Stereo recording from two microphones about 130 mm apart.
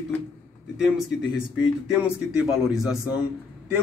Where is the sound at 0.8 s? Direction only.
5° right (ahead or behind).